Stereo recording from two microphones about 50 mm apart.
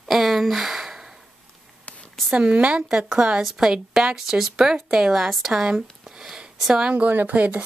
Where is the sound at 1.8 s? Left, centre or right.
Left.